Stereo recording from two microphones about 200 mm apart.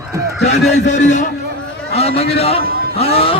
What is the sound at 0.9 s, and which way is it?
A man's voice, 35° left (ahead or behind).